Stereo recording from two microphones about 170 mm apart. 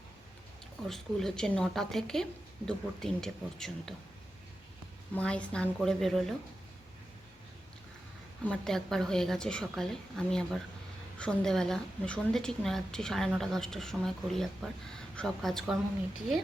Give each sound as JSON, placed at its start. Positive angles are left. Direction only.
{"t": 0.9, "sound": "a woman's voice", "side_deg": 5}
{"t": 5.1, "sound": "a woman's voice", "side_deg": 5}
{"t": 8.4, "sound": "a woman's voice", "side_deg": 5}